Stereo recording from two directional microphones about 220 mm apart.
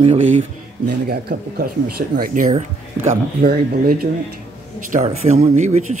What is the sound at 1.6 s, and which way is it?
Speech, 40° right (ahead or behind).